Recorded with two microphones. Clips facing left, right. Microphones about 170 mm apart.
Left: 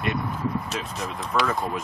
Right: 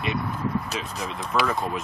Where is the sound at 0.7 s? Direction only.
Centre (ahead or behind).